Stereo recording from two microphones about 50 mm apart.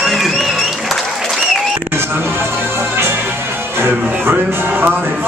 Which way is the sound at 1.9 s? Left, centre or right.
Right.